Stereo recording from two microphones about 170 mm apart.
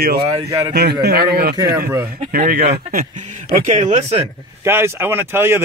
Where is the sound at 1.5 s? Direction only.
20° right (ahead or behind).